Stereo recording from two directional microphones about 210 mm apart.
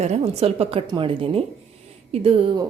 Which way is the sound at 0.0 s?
30° right (ahead or behind).